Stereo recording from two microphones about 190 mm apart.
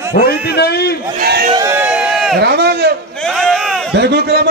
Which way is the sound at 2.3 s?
60° right (ahead or behind).